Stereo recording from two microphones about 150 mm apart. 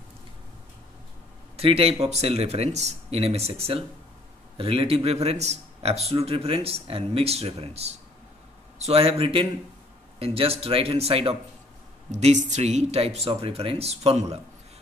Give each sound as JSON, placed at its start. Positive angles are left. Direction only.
{"t": 1.6, "sound": "a man's voice", "side_deg": -40}